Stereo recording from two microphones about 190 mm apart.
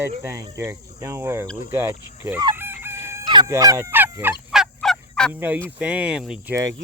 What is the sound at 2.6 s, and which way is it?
Crowing, 10° right (ahead or behind).